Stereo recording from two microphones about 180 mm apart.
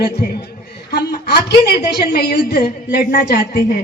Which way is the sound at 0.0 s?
60° left (ahead or behind).